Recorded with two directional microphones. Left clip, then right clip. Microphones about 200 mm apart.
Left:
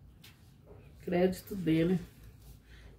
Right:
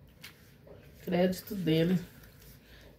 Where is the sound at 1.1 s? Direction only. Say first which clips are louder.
Right 1 dB; centre (ahead or behind).